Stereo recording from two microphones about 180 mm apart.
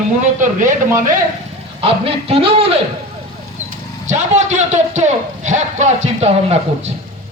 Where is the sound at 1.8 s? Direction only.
30° right (ahead or behind).